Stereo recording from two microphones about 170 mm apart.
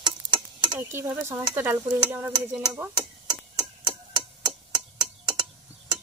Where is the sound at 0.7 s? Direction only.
10° right (ahead or behind).